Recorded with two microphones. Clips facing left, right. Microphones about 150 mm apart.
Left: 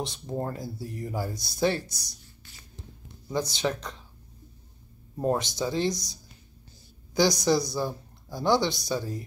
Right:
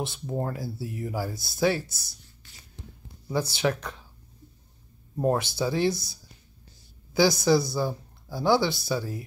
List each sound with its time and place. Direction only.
0.0 s speech: 5° right (ahead or behind)
3.5 s speech: 10° right (ahead or behind)
5.1 s speech: centre (ahead or behind)
7.2 s speech: 5° right (ahead or behind)